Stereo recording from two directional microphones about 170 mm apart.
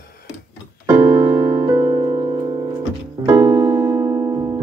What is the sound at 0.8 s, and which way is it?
Music, 15° right (ahead or behind).